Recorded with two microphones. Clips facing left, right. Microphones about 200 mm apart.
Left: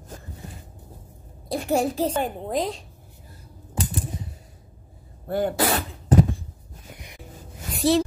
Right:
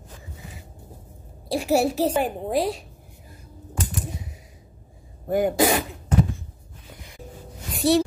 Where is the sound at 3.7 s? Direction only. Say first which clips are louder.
Left 2 dB; 30° left (ahead or behind).